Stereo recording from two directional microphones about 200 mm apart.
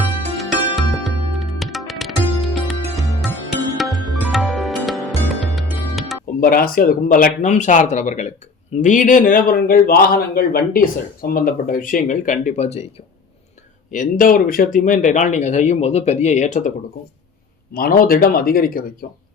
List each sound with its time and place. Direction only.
0.0 s music: centre (ahead or behind)
6.4 s a man's voice: 45° left (ahead or behind)
13.9 s speech: 40° left (ahead or behind)
17.7 s a man's voice: 45° left (ahead or behind)